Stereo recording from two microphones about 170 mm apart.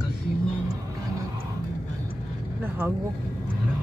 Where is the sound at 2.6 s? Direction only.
10° right (ahead or behind).